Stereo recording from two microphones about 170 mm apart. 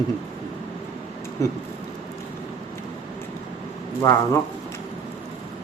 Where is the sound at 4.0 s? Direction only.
20° left (ahead or behind).